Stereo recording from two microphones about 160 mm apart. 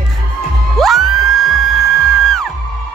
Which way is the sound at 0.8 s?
Centre (ahead or behind).